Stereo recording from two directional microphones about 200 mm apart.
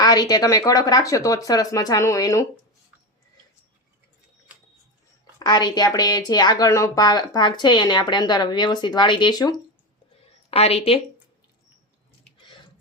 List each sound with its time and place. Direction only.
0.0 s speech: 20° left (ahead or behind)
5.4 s a woman's voice: 20° left (ahead or behind)
10.2 s a sound: 30° left (ahead or behind)